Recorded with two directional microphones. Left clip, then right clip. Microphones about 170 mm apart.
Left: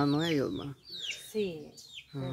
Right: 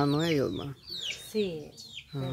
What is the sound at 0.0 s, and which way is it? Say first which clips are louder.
Speech: right 2 dB; centre (ahead or behind).